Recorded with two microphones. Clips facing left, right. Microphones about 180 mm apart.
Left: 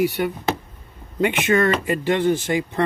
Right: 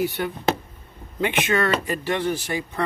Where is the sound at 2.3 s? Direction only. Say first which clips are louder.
Left 6 dB; 20° left (ahead or behind).